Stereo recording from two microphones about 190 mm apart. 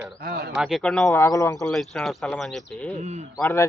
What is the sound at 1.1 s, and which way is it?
Speech, 15° left (ahead or behind).